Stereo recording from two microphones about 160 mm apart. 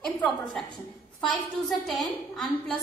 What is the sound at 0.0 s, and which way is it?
A woman's voice, 5° left (ahead or behind).